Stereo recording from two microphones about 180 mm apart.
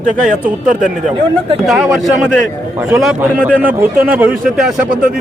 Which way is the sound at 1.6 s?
Centre (ahead or behind).